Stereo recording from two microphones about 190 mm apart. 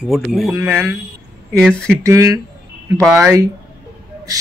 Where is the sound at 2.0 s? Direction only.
15° right (ahead or behind).